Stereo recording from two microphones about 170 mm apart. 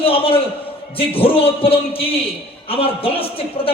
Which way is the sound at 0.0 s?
35° left (ahead or behind).